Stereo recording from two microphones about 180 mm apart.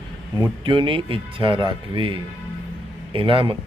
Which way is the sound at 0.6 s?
25° right (ahead or behind).